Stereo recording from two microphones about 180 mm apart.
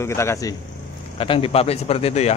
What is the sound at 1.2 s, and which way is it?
A man's voice, 30° left (ahead or behind).